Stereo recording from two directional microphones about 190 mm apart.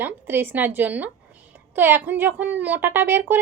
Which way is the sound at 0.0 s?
10° right (ahead or behind).